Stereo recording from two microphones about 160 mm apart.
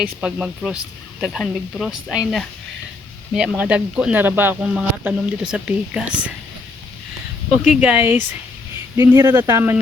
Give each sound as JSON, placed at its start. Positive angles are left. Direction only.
{"t": 0.2, "sound": "speech", "side_deg": -5}
{"t": 7.6, "sound": "speech", "side_deg": -5}
{"t": 9.0, "sound": "speech", "side_deg": -20}